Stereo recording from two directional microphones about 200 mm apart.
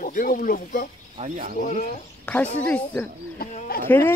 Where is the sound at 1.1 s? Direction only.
40° right (ahead or behind).